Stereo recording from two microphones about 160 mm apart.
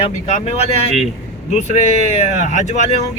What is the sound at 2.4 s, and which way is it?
Speech, 50° left (ahead or behind).